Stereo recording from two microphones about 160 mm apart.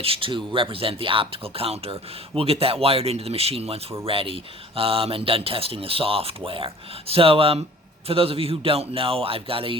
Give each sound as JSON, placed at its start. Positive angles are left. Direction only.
{"t": 0.0, "sound": "speech", "side_deg": -35}